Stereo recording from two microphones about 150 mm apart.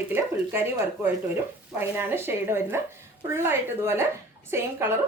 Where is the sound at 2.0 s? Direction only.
15° right (ahead or behind).